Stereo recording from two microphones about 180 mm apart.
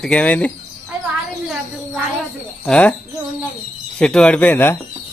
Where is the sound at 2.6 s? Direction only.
5° left (ahead or behind).